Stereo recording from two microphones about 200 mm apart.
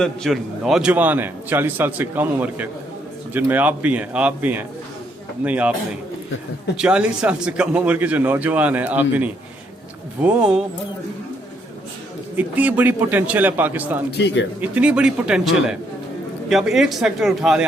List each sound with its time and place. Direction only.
0.0 s a man's voice: centre (ahead or behind)
6.7 s a man's voice: 5° right (ahead or behind)
12.4 s a man's voice: 10° right (ahead or behind)
14.1 s speech: 60° left (ahead or behind)
14.6 s speech: 5° right (ahead or behind)